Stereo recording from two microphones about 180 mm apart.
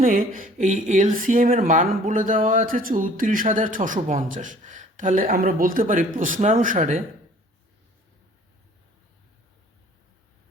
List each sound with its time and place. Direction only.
0.0 s speech: 50° right (ahead or behind)